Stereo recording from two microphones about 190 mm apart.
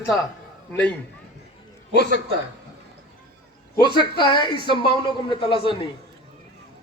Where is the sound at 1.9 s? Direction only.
65° left (ahead or behind).